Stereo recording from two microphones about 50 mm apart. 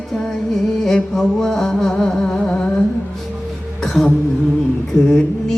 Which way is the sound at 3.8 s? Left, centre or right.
Centre.